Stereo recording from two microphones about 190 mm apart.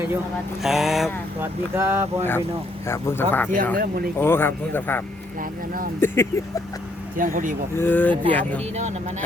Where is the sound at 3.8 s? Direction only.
50° right (ahead or behind).